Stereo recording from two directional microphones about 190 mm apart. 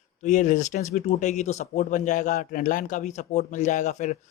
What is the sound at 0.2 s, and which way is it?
Speech, 40° left (ahead or behind).